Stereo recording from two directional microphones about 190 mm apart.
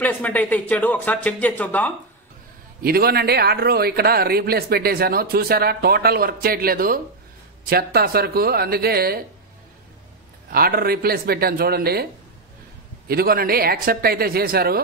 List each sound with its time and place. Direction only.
0.0 s speech: 10° left (ahead or behind)
2.8 s speech: 55° right (ahead or behind)
10.5 s speech: 50° right (ahead or behind)
13.1 s speech: 50° right (ahead or behind)